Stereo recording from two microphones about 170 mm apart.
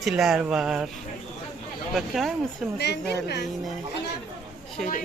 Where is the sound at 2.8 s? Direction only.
75° left (ahead or behind).